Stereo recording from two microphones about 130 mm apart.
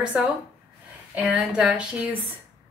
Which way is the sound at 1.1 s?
10° right (ahead or behind).